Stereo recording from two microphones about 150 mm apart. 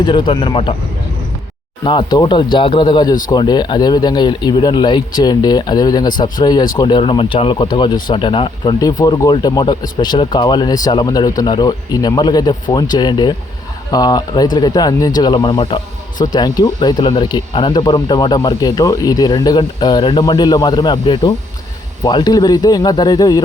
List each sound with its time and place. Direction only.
0.0 s speech: 30° left (ahead or behind)
1.8 s speech: 30° left (ahead or behind)